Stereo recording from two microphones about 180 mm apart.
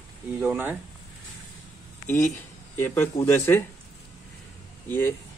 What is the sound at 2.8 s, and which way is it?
Speech, 15° left (ahead or behind).